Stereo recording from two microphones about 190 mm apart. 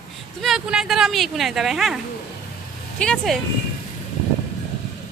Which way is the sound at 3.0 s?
5° left (ahead or behind).